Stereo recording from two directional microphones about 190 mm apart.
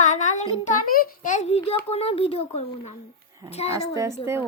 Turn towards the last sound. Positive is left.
turn(degrees=-15)  # may be behind; listen again after turning